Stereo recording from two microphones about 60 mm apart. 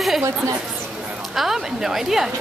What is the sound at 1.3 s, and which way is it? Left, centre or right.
Speech, centre.